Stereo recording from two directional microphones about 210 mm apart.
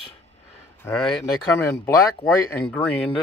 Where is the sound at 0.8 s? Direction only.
5° left (ahead or behind).